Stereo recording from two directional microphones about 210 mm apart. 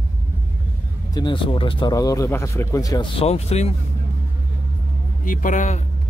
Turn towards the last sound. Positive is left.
turn(degrees=35)  # may be behind; listen again after turning